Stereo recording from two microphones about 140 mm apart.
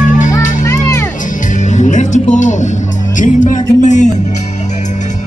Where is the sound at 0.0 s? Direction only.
65° left (ahead or behind).